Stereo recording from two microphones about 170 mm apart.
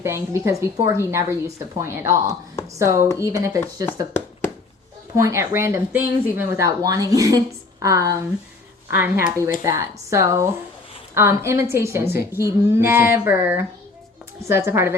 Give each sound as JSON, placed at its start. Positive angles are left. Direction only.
{"t": 0.0, "sound": "a woman's voice", "side_deg": -15}
{"t": 5.1, "sound": "a woman's voice", "side_deg": -15}